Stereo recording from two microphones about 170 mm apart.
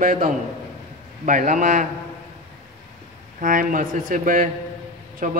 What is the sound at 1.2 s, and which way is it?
Speech, 45° right (ahead or behind).